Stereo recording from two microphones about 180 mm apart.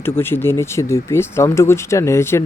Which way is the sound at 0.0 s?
10° left (ahead or behind).